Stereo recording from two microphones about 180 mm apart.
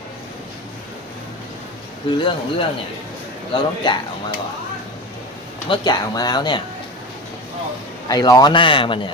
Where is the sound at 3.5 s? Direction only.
25° left (ahead or behind).